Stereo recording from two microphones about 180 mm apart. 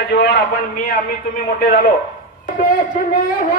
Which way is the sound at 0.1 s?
70° left (ahead or behind).